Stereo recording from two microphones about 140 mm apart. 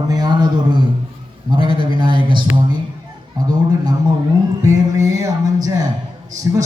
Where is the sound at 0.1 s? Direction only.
30° right (ahead or behind).